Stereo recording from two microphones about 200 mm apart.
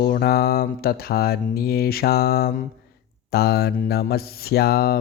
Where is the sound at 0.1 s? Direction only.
50° left (ahead or behind).